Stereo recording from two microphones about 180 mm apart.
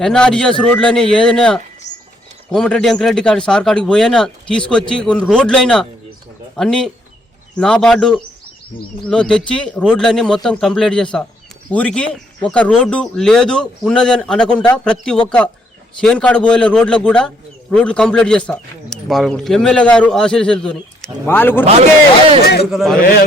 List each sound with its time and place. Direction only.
0.0 s a man's voice: 5° left (ahead or behind)
1.9 s a sound: 75° left (ahead or behind)
2.5 s a man's voice: 5° left (ahead or behind)
22.7 s a man's voice: centre (ahead or behind)